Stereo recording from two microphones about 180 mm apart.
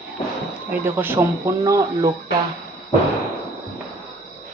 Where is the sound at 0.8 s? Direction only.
10° right (ahead or behind).